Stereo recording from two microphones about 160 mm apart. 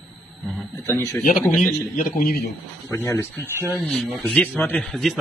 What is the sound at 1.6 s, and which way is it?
Speech, 60° left (ahead or behind).